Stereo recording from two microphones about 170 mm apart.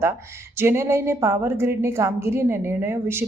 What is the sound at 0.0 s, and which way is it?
Speech, 15° right (ahead or behind).